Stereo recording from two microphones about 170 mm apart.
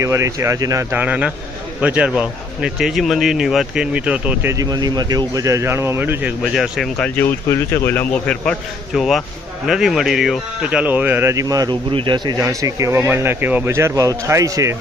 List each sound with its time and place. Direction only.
0.0 s a man's voice: 15° right (ahead or behind)
4.5 s speech: 20° right (ahead or behind); by 7.1 s centre (ahead or behind)
7.2 s a man's voice: 15° left (ahead or behind); by 14.8 s 20° right (ahead or behind)